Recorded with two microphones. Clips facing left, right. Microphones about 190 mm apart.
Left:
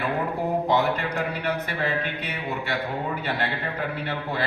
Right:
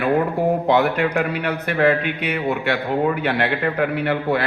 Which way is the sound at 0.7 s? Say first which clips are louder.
Right 6 dB; 65° right (ahead or behind).